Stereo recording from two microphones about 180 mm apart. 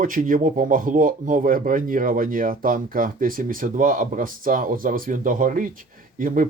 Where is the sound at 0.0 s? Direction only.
50° right (ahead or behind).